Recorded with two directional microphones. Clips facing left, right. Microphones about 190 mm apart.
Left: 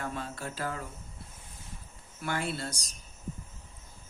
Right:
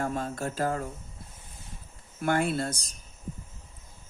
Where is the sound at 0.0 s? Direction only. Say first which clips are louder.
Right 6 dB; 45° right (ahead or behind).